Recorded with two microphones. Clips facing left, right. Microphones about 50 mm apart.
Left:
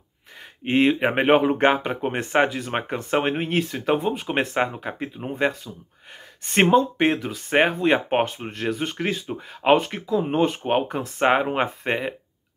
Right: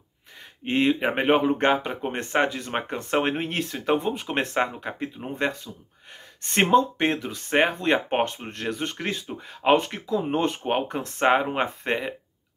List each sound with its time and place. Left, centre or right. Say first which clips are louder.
0.7 s speech: left 3 dB; left
3.1 s speech: left 2 dB; centre